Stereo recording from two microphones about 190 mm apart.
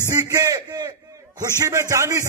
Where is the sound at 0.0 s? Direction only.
20° right (ahead or behind).